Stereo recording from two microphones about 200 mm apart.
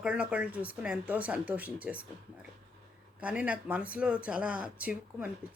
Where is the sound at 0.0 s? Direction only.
5° right (ahead or behind).